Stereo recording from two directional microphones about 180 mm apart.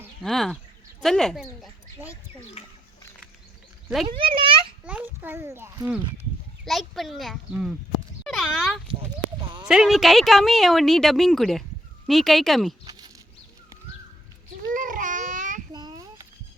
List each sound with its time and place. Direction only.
0.2 s speech: centre (ahead or behind)
2.6 s speech: 35° left (ahead or behind)
4.2 s a child's voice: 30° right (ahead or behind)
4.9 s a child's voice: 10° right (ahead or behind)
6.7 s speech: centre (ahead or behind)
12.8 s a sound: 20° right (ahead or behind)
14.7 s baby cry: 50° right (ahead or behind)
15.7 s a sound: 25° right (ahead or behind)